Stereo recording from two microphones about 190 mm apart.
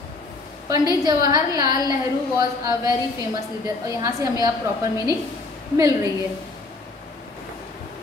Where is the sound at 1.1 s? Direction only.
20° right (ahead or behind).